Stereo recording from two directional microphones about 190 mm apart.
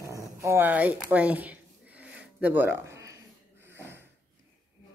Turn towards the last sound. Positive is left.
turn(degrees=-10)  # may be behind; listen again after turning